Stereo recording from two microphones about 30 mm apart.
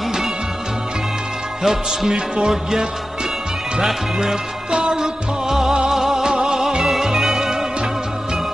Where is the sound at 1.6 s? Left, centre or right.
Centre.